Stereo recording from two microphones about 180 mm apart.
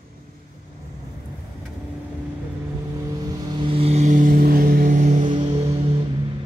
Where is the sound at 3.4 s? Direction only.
25° right (ahead or behind); by 5.3 s 45° right (ahead or behind).